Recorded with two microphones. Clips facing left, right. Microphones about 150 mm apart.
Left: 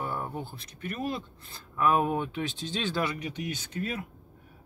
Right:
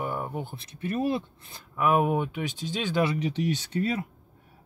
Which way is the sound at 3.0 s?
30° right (ahead or behind).